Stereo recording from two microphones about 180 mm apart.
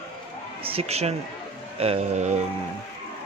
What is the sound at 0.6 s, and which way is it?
Speech, 35° right (ahead or behind).